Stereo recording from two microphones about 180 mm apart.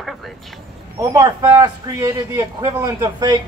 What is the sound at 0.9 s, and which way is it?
A man's voice, 15° right (ahead or behind).